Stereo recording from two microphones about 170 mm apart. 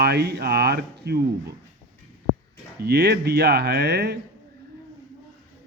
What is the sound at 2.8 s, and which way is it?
Speech, 75° right (ahead or behind).